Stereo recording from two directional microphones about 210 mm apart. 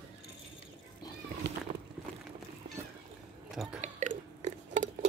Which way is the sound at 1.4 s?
50° right (ahead or behind).